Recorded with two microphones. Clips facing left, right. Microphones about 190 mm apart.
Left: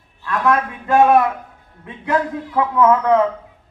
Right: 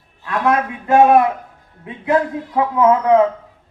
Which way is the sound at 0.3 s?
25° right (ahead or behind).